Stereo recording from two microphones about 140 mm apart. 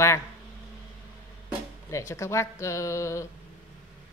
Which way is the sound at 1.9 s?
20° left (ahead or behind).